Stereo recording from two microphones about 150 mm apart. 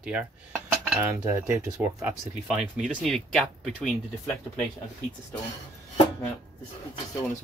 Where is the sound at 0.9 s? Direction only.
20° right (ahead or behind).